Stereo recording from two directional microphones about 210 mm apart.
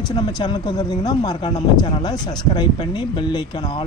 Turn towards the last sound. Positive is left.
turn(degrees=20)  # may be behind; listen again after turning